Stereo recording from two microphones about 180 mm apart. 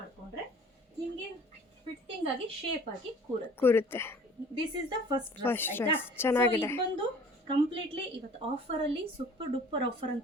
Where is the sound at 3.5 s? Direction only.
10° left (ahead or behind).